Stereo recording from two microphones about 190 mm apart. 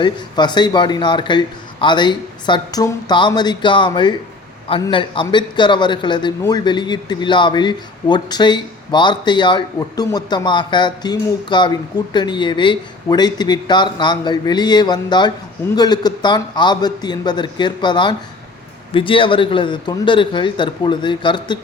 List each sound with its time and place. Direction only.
0.0 s speech: 25° left (ahead or behind)